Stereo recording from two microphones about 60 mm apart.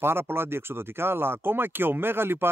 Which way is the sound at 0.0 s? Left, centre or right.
Right.